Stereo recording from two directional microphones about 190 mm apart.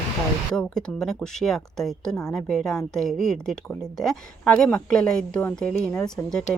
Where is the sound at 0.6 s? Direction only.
5° left (ahead or behind).